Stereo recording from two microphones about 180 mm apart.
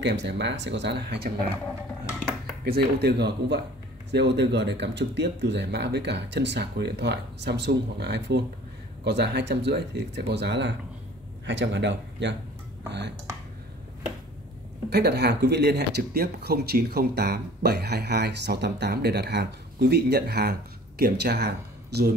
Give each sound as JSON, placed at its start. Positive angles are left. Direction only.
{"t": 0.0, "sound": "speech", "side_deg": -75}
{"t": 2.6, "sound": "a man's voice", "side_deg": -60}
{"t": 14.9, "sound": "speech", "side_deg": -65}